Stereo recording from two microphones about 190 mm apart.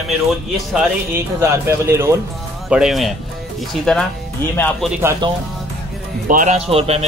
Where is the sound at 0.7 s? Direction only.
10° right (ahead or behind).